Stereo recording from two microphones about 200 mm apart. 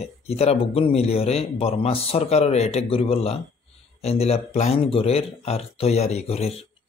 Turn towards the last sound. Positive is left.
turn(degrees=30)  # may be behind; listen again after turning